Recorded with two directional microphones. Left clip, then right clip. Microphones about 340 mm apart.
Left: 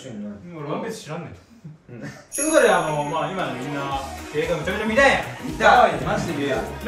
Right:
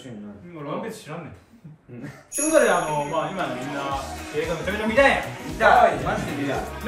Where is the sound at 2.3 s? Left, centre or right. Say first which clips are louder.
Left 2 dB; centre.